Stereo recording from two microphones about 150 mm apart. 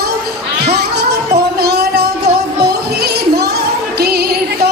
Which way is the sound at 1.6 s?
90° right.